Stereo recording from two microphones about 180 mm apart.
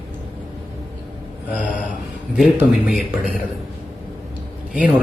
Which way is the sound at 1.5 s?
45° left (ahead or behind).